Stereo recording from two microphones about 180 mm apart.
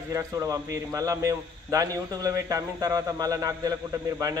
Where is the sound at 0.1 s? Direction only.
20° right (ahead or behind).